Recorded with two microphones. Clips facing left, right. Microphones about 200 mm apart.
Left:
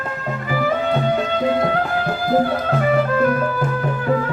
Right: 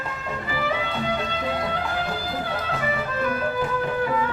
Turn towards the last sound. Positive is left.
turn(degrees=50)  # may be behind; listen again after turning